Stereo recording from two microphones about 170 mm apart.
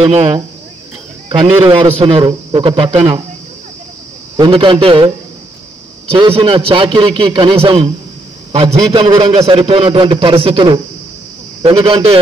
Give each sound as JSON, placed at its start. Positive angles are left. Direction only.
{"t": 0.0, "sound": "a man's voice", "side_deg": -35}
{"t": 1.4, "sound": "a man's voice", "side_deg": -30}
{"t": 4.4, "sound": "a man's voice", "side_deg": -30}